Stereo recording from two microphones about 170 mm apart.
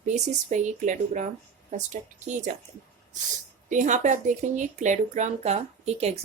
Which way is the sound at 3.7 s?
45° right (ahead or behind).